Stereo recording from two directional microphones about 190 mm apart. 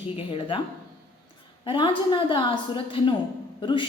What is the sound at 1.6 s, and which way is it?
A woman's voice, 25° left (ahead or behind).